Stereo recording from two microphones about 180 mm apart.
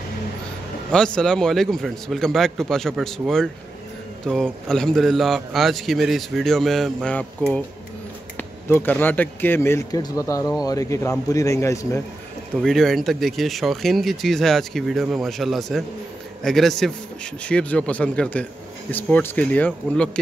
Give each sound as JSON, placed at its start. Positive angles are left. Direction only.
{"t": 0.9, "sound": "a man's voice", "side_deg": 5}
{"t": 12.5, "sound": "a man's voice", "side_deg": 0}